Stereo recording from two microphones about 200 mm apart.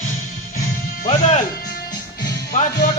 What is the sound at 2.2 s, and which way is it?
Music, 40° left (ahead or behind).